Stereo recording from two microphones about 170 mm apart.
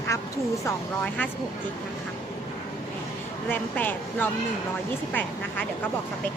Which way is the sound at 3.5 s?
10° left (ahead or behind).